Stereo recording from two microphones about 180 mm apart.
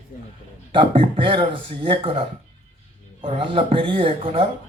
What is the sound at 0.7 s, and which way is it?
A man's voice, 30° right (ahead or behind).